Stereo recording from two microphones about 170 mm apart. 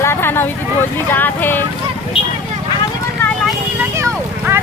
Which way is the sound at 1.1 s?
10° left (ahead or behind).